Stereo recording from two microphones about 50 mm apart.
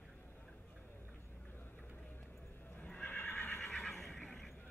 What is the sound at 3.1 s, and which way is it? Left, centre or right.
Neigh, left.